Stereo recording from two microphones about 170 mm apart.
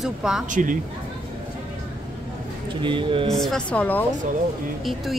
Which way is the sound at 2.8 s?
30° right (ahead or behind).